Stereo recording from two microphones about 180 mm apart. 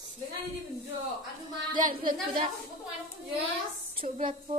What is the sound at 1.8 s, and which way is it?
Speech, 50° right (ahead or behind).